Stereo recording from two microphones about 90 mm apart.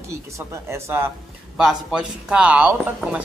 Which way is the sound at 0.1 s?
30° right (ahead or behind).